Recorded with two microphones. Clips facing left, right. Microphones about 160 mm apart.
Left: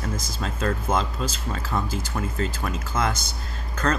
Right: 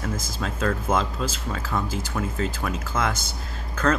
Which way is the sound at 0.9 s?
5° right (ahead or behind).